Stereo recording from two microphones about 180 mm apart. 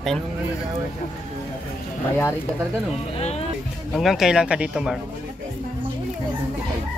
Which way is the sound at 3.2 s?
35° left (ahead or behind).